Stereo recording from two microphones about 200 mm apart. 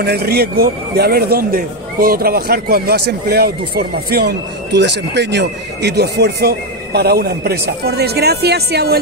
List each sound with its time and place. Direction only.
0.0 s speech: 55° right (ahead or behind)